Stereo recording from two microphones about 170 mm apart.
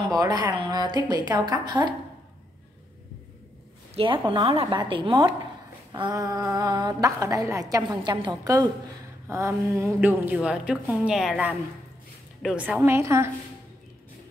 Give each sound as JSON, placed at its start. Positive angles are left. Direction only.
{"t": 0.1, "sound": "a woman's voice", "side_deg": -20}
{"t": 3.9, "sound": "a woman's voice", "side_deg": -30}